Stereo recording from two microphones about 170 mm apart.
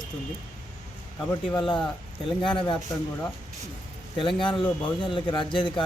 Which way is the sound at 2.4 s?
30° left (ahead or behind).